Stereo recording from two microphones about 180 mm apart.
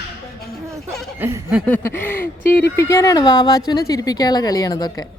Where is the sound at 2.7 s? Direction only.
15° left (ahead or behind).